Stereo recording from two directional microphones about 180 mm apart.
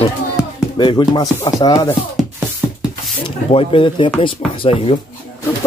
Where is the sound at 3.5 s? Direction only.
30° left (ahead or behind).